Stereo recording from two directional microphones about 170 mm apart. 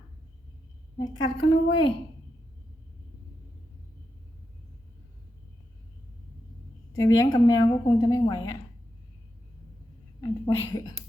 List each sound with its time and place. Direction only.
0.9 s a woman's voice: 25° left (ahead or behind)
6.9 s a woman's voice: 20° left (ahead or behind)
10.2 s a woman's voice: 25° left (ahead or behind)